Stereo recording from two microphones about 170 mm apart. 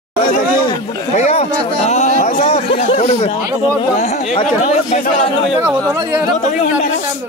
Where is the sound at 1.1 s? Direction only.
40° left (ahead or behind).